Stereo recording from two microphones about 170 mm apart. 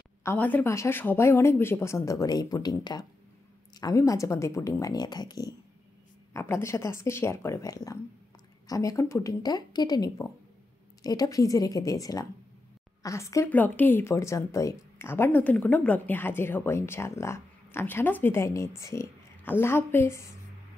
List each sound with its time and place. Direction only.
0.2 s a woman's voice: 10° left (ahead or behind)